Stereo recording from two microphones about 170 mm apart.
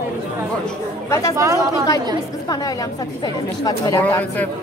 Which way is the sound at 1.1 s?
15° left (ahead or behind).